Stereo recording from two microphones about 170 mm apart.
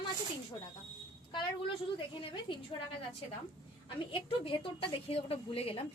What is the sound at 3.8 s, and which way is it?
A woman's voice, 30° left (ahead or behind).